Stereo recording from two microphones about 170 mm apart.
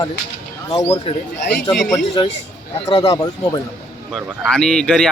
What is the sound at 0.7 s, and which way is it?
Speech, 30° left (ahead or behind).